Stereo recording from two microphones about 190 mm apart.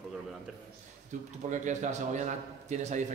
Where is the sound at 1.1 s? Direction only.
40° right (ahead or behind).